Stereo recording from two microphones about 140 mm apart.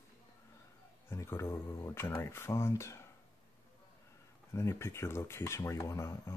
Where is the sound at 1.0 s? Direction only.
20° left (ahead or behind).